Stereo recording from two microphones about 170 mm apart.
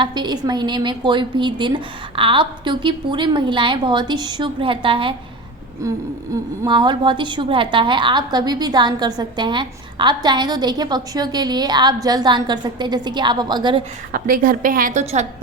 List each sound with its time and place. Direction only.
0.0 s a woman's voice: 25° right (ahead or behind)
6.6 s a woman's voice: 25° right (ahead or behind)
14.1 s a woman's voice: 55° right (ahead or behind)